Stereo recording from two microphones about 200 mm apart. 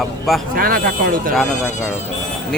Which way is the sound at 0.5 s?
45° right (ahead or behind).